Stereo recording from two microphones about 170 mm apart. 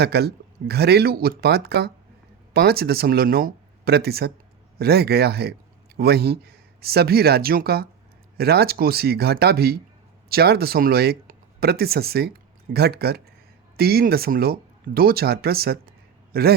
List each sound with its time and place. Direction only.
0.0 s speech: 70° right (ahead or behind)